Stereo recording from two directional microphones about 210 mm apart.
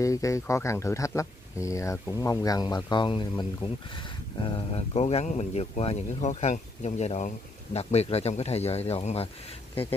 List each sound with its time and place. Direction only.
0.0 s speech: 15° left (ahead or behind)